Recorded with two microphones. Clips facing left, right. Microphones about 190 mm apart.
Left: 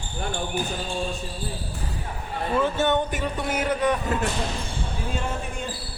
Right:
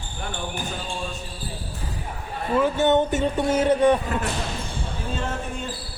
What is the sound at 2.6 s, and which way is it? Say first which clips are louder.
Speech: right 4 dB; 20° right (ahead or behind).